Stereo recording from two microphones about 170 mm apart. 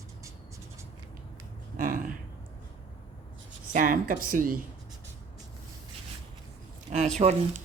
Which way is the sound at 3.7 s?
55° right (ahead or behind).